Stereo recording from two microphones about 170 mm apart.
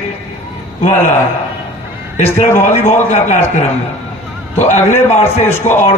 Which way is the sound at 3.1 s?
45° left (ahead or behind).